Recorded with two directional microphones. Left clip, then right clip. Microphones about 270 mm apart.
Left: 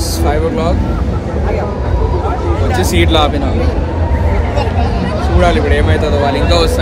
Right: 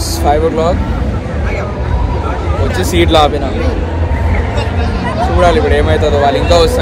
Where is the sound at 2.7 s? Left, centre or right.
Centre.